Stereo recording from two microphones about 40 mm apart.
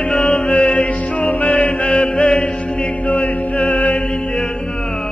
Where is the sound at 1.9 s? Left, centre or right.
Centre.